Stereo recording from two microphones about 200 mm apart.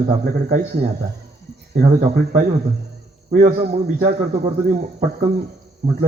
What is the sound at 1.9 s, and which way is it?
A man's voice, 40° right (ahead or behind).